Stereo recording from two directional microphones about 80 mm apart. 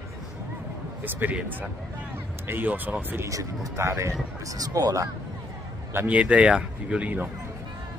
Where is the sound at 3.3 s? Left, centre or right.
Right.